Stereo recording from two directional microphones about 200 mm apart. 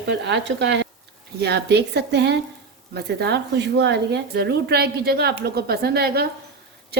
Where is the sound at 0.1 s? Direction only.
60° right (ahead or behind).